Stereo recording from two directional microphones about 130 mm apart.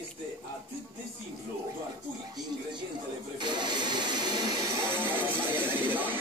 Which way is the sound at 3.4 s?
35° right (ahead or behind).